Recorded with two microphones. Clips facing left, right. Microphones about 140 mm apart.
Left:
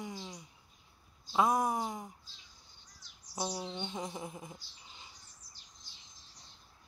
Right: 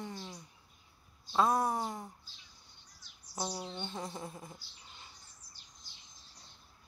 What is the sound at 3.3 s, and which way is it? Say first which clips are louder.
Speech: left 1 dB; 10° left (ahead or behind).